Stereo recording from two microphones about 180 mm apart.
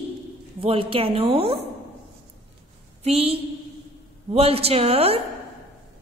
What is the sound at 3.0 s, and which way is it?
A woman's voice, 35° right (ahead or behind).